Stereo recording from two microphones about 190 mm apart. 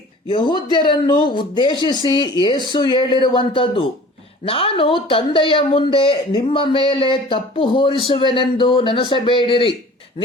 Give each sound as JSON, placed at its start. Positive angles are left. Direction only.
{"t": 0.3, "sound": "speech", "side_deg": 25}